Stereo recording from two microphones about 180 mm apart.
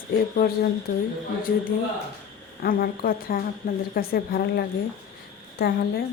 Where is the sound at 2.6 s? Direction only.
55° left (ahead or behind).